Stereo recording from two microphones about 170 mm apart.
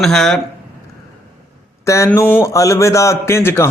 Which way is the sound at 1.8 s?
15° left (ahead or behind).